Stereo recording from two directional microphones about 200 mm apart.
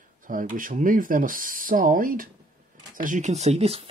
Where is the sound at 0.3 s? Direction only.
40° right (ahead or behind).